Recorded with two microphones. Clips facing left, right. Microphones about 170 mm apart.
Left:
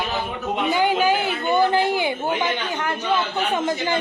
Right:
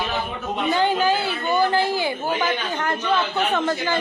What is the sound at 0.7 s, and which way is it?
A man's voice, 15° left (ahead or behind).